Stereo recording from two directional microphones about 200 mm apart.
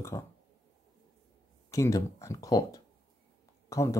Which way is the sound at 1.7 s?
15° left (ahead or behind).